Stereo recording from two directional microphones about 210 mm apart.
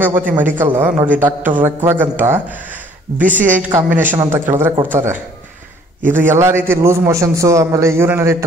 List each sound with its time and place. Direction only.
0.0 s a man's voice: 10° right (ahead or behind)
3.4 s a man's voice: 10° right (ahead or behind)